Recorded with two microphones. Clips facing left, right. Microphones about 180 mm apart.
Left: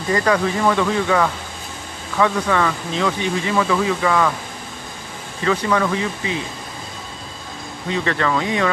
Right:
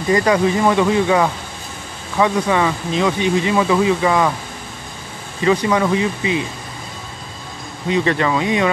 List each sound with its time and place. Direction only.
0.1 s speech: 15° right (ahead or behind)
5.4 s speech: 15° right (ahead or behind)
7.9 s speech: 15° right (ahead or behind)